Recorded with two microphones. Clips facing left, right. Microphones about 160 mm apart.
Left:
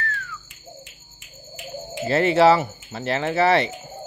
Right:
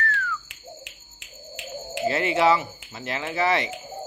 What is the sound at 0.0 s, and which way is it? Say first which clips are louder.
Finger snapping: right 3 dB; 25° left (ahead or behind).